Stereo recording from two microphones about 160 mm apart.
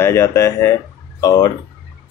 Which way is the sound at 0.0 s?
15° left (ahead or behind).